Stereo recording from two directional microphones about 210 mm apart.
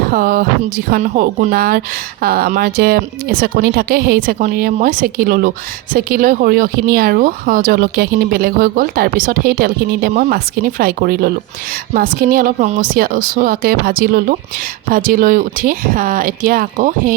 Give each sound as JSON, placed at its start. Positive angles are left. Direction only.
{"t": 0.1, "sound": "speech", "side_deg": -45}